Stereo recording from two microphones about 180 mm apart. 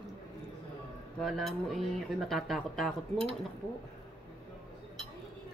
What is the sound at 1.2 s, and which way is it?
Speech, centre (ahead or behind).